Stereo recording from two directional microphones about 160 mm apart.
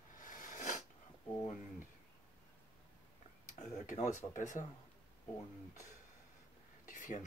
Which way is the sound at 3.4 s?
50° left (ahead or behind).